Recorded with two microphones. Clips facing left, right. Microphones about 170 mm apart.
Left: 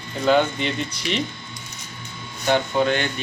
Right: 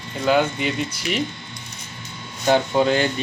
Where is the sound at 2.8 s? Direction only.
30° right (ahead or behind).